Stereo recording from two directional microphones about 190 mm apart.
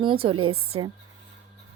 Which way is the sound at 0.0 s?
25° right (ahead or behind).